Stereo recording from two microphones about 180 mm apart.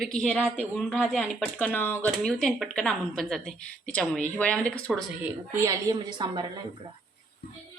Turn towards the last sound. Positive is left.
turn(degrees=-25)  # may be behind; listen again after turning